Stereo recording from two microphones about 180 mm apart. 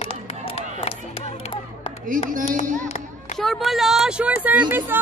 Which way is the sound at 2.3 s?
50° right (ahead or behind).